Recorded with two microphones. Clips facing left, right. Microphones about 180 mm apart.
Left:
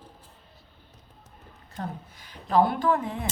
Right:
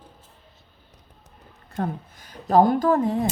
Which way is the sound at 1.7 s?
50° right (ahead or behind).